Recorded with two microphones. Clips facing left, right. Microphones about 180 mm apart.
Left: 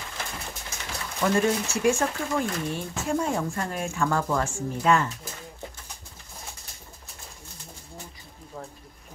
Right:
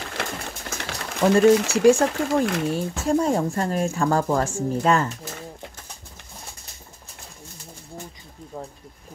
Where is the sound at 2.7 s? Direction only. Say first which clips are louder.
Right 6 dB; 40° right (ahead or behind).